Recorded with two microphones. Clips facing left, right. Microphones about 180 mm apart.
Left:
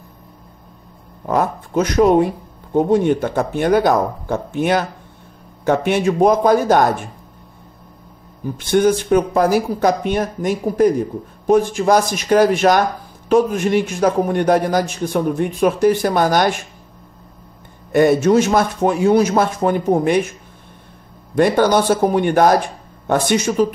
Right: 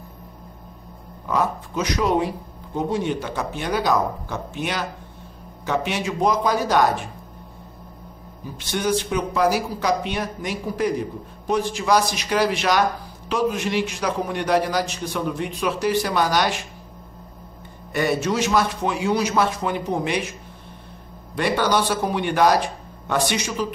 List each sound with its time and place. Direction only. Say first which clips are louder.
1.2 s speech: left 4 dB; 50° left (ahead or behind)
8.5 s speech: left 8 dB; 50° left (ahead or behind)
17.9 s speech: left 9 dB; 50° left (ahead or behind)
21.4 s speech: left 7 dB; 45° left (ahead or behind)